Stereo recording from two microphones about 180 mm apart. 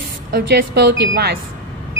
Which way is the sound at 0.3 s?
60° right (ahead or behind).